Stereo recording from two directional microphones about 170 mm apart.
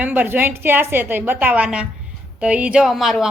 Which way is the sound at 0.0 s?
10° right (ahead or behind).